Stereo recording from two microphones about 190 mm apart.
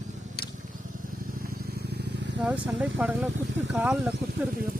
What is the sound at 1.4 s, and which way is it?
Vehicle, 55° right (ahead or behind).